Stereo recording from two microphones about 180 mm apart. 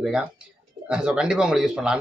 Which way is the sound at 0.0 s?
Centre (ahead or behind).